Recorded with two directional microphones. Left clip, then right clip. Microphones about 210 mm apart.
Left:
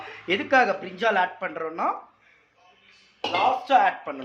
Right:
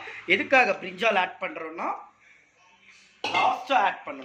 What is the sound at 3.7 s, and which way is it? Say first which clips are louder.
Speech: left 3 dB; 25° left (ahead or behind).